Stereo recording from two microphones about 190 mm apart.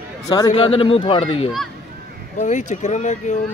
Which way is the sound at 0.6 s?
30° left (ahead or behind).